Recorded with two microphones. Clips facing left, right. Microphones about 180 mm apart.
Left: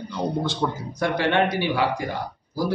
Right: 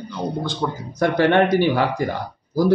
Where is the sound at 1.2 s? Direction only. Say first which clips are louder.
Right 7 dB; 45° right (ahead or behind).